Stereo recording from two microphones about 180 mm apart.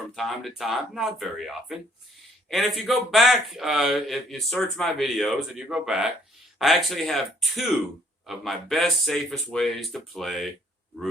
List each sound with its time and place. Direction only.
0.2 s a man's voice: centre (ahead or behind)